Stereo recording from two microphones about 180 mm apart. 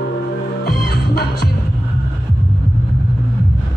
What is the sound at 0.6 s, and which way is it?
Music, 60° left (ahead or behind).